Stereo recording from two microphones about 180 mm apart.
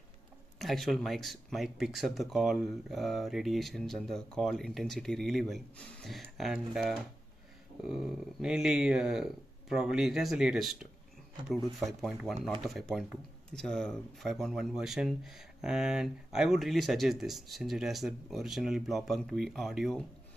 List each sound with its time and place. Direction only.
0.6 s speech: centre (ahead or behind)